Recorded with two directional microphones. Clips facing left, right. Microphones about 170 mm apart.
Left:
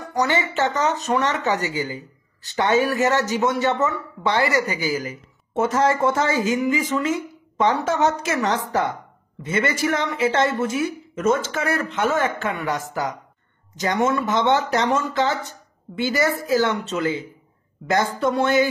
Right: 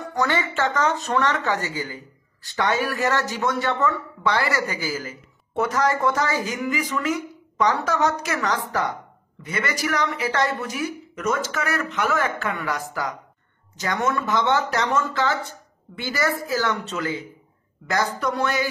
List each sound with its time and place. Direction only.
0.1 s a woman's voice: 20° left (ahead or behind)